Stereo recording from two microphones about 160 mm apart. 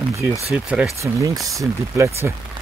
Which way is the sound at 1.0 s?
20° right (ahead or behind).